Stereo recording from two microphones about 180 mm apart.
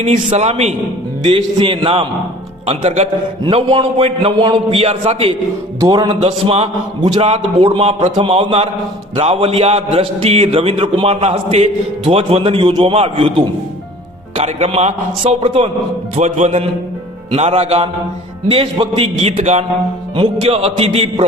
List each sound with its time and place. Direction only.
0.0 s a man's voice: 35° right (ahead or behind)
3.4 s a man's voice: 25° right (ahead or behind)
16.1 s a man's voice: 40° right (ahead or behind)